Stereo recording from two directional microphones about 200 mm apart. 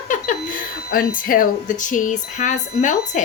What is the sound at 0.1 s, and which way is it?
Chuckle, 40° left (ahead or behind).